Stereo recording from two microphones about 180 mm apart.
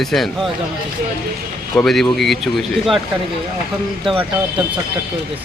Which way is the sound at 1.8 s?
Centre (ahead or behind).